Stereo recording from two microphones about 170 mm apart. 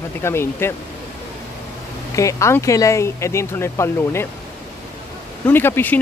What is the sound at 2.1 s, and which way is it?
Speech, 15° left (ahead or behind).